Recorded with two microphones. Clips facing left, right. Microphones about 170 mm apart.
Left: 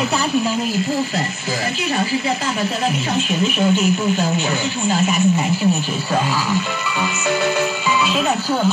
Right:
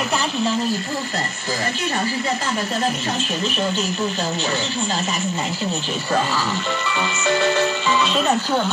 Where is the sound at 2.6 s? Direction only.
5° left (ahead or behind).